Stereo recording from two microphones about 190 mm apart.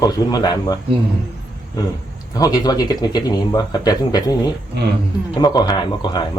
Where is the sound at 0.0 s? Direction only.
20° left (ahead or behind).